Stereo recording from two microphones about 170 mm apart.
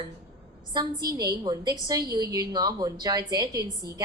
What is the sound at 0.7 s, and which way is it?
A woman's voice, 25° right (ahead or behind).